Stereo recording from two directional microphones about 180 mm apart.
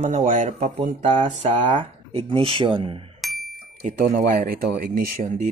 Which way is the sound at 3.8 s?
50° right (ahead or behind).